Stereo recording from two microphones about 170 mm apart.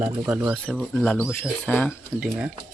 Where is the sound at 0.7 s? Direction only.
5° left (ahead or behind).